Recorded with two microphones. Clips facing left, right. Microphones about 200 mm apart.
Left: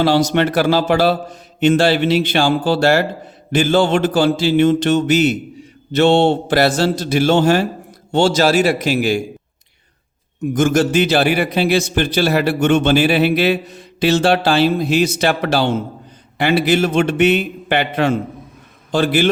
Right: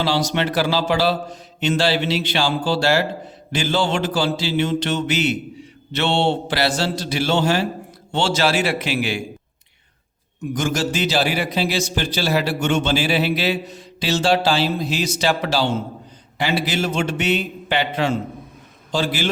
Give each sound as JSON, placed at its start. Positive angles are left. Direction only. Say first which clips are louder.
{"t": 0.0, "sound": "a man's voice", "louder": "left 6 dB", "side_deg": 50}
{"t": 10.4, "sound": "a man's voice", "louder": "left 7 dB", "side_deg": 50}